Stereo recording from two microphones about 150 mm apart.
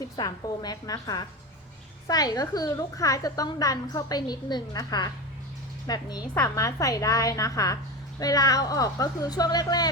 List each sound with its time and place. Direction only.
0.2 s a woman's voice: 25° left (ahead or behind)